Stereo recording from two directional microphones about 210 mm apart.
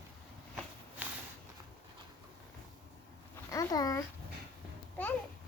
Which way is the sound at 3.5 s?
15° left (ahead or behind).